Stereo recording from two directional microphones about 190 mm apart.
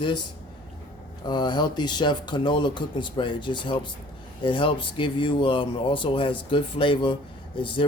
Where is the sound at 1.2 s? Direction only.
20° left (ahead or behind).